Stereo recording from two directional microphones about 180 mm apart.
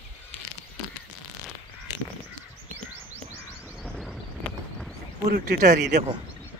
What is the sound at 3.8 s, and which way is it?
Vehicle, 5° left (ahead or behind).